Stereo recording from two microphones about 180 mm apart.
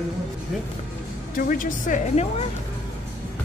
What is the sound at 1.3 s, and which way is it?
Speech, 50° left (ahead or behind).